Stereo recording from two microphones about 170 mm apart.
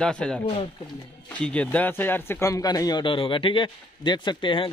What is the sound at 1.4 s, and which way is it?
Speech, 10° left (ahead or behind).